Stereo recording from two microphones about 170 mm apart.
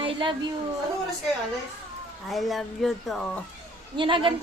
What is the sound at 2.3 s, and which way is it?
Speech, centre (ahead or behind).